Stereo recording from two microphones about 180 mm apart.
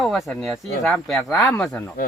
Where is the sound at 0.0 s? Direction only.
Centre (ahead or behind).